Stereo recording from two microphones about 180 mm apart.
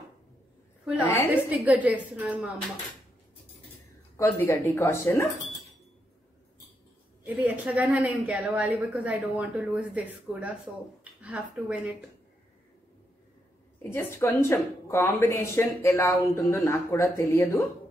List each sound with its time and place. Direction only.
1.0 s speech: 15° left (ahead or behind)
1.3 s a woman's voice: 10° right (ahead or behind)
4.2 s speech: 15° left (ahead or behind)
7.2 s a woman's voice: 10° right (ahead or behind)
13.8 s speech: 15° left (ahead or behind)